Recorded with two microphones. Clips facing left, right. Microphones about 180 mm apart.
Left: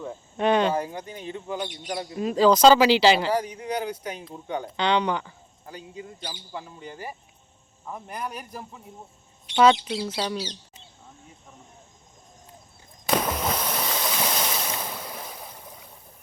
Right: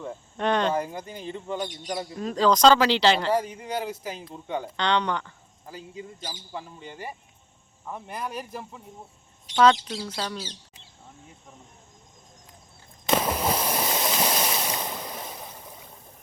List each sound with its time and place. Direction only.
0.0 s speech: 5° left (ahead or behind)
3.3 s speech: 5° right (ahead or behind)
9.5 s squawk: 40° right (ahead or behind)
9.8 s speech: 10° left (ahead or behind)
13.1 s a sound: 5° right (ahead or behind)
14.1 s waves: 5° right (ahead or behind)